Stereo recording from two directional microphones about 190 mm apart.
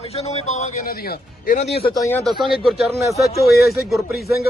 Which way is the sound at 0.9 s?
55° left (ahead or behind).